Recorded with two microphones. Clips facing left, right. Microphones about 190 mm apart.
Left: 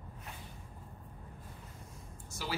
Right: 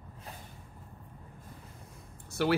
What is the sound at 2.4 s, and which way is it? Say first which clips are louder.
Speech: right 12 dB; 65° right (ahead or behind).